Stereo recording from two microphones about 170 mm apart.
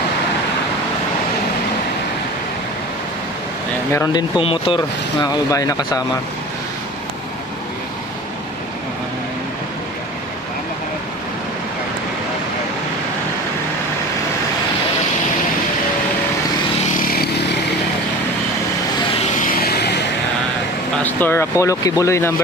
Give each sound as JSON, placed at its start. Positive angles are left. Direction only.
{"t": 3.9, "sound": "speech", "side_deg": 20}
{"t": 4.4, "sound": "speech", "side_deg": 30}
{"t": 5.2, "sound": "speech", "side_deg": 20}
{"t": 16.9, "sound": "vehicle", "side_deg": 60}
{"t": 19.1, "sound": "vehicle", "side_deg": 50}
{"t": 21.0, "sound": "speech", "side_deg": 10}